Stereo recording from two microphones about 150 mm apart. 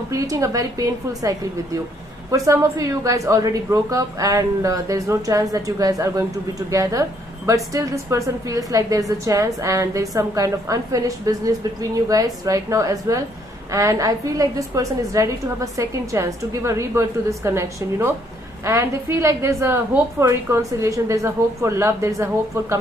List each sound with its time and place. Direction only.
0.1 s a woman's voice: 20° right (ahead or behind)